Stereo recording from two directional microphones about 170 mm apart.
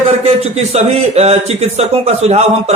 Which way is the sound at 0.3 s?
40° right (ahead or behind).